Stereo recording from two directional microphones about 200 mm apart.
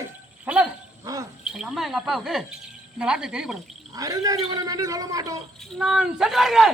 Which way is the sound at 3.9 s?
20° right (ahead or behind).